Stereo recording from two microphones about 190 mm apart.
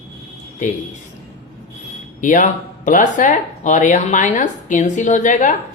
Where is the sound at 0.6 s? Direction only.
40° left (ahead or behind).